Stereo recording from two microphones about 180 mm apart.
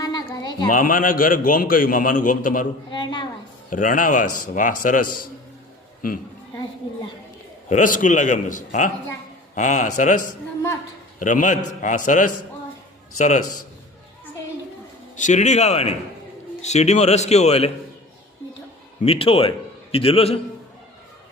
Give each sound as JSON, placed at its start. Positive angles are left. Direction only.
{"t": 0.0, "sound": "a sound", "side_deg": 20}
{"t": 0.7, "sound": "a man's voice", "side_deg": 50}
{"t": 2.9, "sound": "a sound", "side_deg": 25}
{"t": 3.7, "sound": "a man's voice", "side_deg": 45}
{"t": 7.7, "sound": "a man's voice", "side_deg": 45}
{"t": 15.1, "sound": "a man's voice", "side_deg": 45}
{"t": 19.0, "sound": "a man's voice", "side_deg": 30}